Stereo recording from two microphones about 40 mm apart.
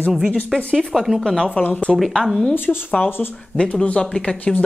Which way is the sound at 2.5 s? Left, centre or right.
Left.